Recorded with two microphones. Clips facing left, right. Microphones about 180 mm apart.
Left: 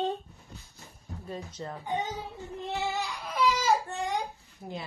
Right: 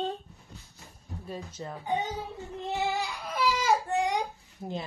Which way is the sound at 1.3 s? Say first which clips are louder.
Even; 10° right (ahead or behind).